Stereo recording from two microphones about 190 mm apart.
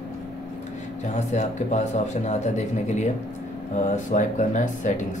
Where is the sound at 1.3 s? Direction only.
40° left (ahead or behind).